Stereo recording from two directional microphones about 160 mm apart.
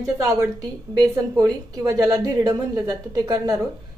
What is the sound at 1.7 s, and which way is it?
A woman's voice, 20° right (ahead or behind).